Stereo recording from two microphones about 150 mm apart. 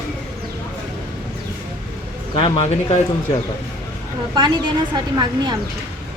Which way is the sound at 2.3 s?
45° left (ahead or behind).